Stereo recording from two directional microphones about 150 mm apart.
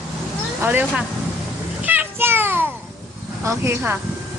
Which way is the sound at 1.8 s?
10° right (ahead or behind).